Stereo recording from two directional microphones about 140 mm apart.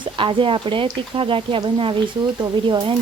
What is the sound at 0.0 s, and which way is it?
Speech, 35° right (ahead or behind).